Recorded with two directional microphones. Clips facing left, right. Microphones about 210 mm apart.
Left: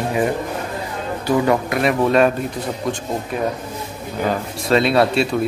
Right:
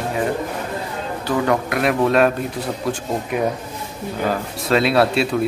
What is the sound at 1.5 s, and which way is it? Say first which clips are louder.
Speech: left 1 dB; centre (ahead or behind).